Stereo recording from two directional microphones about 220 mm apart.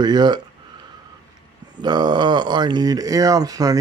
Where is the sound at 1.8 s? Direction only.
20° right (ahead or behind).